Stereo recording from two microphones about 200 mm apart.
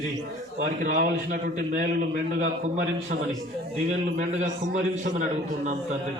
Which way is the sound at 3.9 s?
35° right (ahead or behind).